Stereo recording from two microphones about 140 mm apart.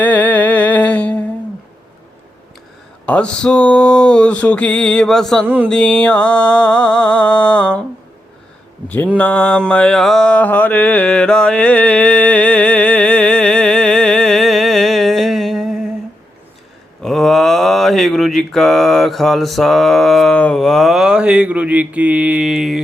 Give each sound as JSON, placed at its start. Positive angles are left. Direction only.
{"t": 0.0, "sound": "music", "side_deg": 10}
{"t": 3.1, "sound": "a sound", "side_deg": 10}
{"t": 9.1, "sound": "mantra", "side_deg": 10}
{"t": 17.0, "sound": "mantra", "side_deg": 0}